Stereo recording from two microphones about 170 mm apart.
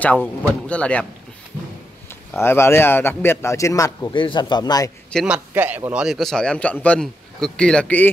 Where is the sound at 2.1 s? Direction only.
15° left (ahead or behind).